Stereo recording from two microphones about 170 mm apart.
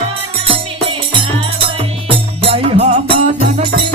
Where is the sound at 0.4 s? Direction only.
35° right (ahead or behind).